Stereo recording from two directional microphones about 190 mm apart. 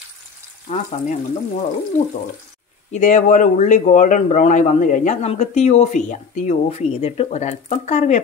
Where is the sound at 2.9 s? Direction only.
40° left (ahead or behind).